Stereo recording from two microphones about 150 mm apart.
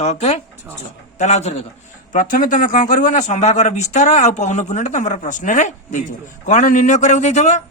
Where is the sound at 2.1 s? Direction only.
60° left (ahead or behind).